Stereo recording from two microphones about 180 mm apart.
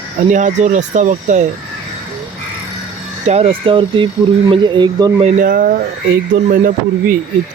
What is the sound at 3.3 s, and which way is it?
Speech, 30° right (ahead or behind).